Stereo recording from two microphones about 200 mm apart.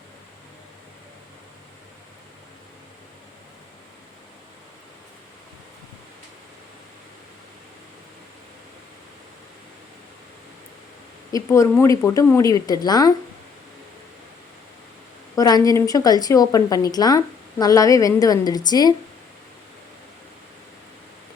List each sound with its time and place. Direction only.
11.3 s speech: 15° left (ahead or behind)
15.4 s a woman's voice: 20° left (ahead or behind)